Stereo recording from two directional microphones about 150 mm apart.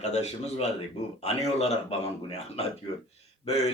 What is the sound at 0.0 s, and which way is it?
A man's voice, 45° left (ahead or behind).